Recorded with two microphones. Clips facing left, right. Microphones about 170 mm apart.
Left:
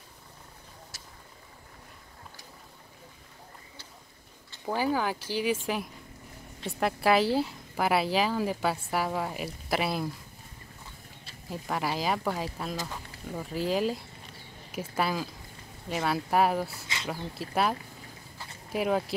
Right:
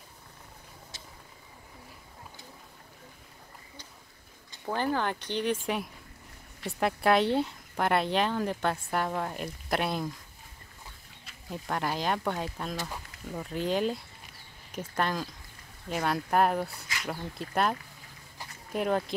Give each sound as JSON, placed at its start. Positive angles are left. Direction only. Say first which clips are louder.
{"t": 4.6, "sound": "a woman's voice", "louder": "left 1 dB", "side_deg": 5}
{"t": 11.5, "sound": "a woman's voice", "louder": "left 1 dB", "side_deg": 0}
{"t": 16.8, "sound": "a sound", "louder": "left 1 dB", "side_deg": 25}
{"t": 17.4, "sound": "a woman's voice", "louder": "left 1 dB", "side_deg": 5}